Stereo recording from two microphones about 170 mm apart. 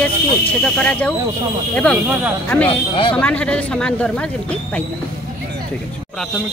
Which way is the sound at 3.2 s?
5° left (ahead or behind).